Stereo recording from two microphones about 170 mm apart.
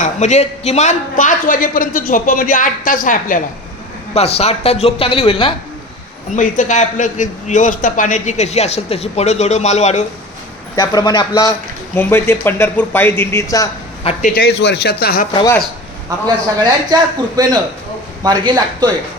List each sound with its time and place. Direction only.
0.0 s a man's voice: 45° left (ahead or behind)
4.1 s speech: 35° left (ahead or behind)
6.3 s a man's voice: 45° left (ahead or behind)
10.8 s a man's voice: 25° left (ahead or behind)
14.0 s a man's voice: 35° left (ahead or behind)
14.3 s speech: 65° left (ahead or behind)
16.9 s a man's voice: 20° right (ahead or behind)